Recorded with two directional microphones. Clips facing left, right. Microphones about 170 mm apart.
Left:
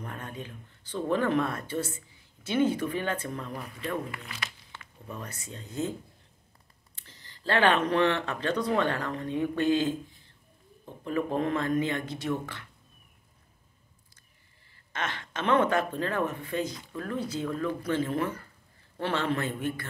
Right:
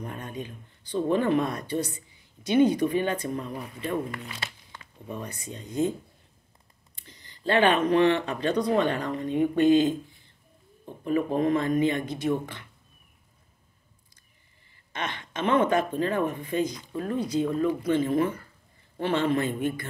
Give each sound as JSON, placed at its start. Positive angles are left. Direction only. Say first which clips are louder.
{"t": 0.0, "sound": "speech", "louder": "right 3 dB", "side_deg": -15}
{"t": 4.4, "sound": "a sound", "louder": "right 2 dB", "side_deg": -30}
{"t": 4.7, "sound": "speech", "louder": "right 4 dB", "side_deg": -15}
{"t": 7.0, "sound": "speech", "louder": "right 5 dB", "side_deg": -15}
{"t": 11.1, "sound": "speech", "louder": "right 4 dB", "side_deg": -15}
{"t": 14.9, "sound": "speech", "louder": "right 1 dB", "side_deg": -15}